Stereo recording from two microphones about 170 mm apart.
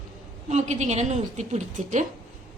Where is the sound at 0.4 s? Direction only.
45° right (ahead or behind).